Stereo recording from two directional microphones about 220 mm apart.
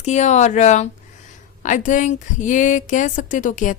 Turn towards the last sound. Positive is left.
turn(degrees=35)  # may be behind; listen again after turning